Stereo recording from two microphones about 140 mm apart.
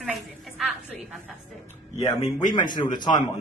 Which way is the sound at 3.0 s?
30° left (ahead or behind).